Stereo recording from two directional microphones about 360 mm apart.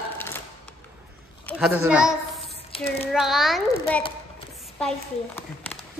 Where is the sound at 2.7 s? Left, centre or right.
Centre.